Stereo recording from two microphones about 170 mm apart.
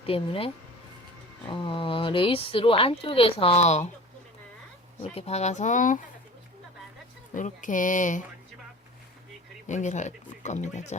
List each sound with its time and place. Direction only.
0.0 s speech: 35° left (ahead or behind)
5.1 s speech: 40° left (ahead or behind)
7.3 s speech: 50° left (ahead or behind)
9.6 s speech: 45° left (ahead or behind)